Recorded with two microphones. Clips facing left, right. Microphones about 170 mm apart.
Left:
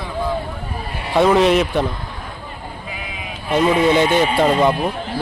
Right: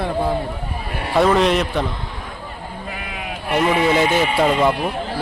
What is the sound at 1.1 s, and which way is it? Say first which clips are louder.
Speech: left 2 dB; centre (ahead or behind).